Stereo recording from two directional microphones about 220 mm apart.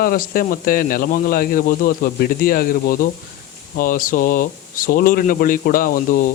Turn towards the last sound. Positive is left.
turn(degrees=40)  # may be behind; listen again after turning